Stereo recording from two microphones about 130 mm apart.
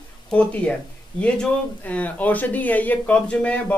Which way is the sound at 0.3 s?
10° left (ahead or behind).